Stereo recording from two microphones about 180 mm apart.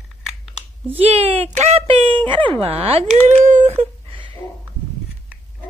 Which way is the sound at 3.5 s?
40° right (ahead or behind).